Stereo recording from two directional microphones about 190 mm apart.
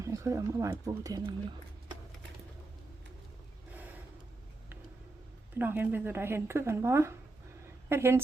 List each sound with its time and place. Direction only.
0.0 s speech: 15° right (ahead or behind)
3.7 s vehicle: 10° right (ahead or behind)
5.5 s speech: 10° right (ahead or behind)